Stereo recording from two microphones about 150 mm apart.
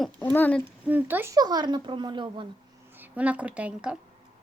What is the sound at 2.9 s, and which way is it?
A woman's voice, 10° right (ahead or behind).